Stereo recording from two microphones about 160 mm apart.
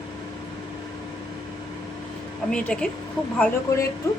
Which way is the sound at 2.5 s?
5° left (ahead or behind).